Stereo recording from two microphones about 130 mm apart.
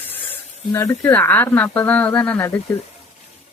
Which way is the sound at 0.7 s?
20° left (ahead or behind).